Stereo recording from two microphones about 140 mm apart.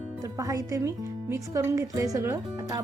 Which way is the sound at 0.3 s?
25° right (ahead or behind).